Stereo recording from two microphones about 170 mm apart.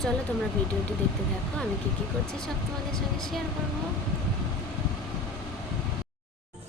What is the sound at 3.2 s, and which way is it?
Speech, centre (ahead or behind).